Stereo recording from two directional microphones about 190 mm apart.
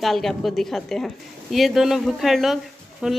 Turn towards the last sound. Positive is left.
turn(degrees=0)  # may be behind; listen again after turning